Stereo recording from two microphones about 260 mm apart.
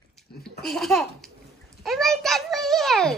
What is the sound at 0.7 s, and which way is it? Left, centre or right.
A child's voice, centre.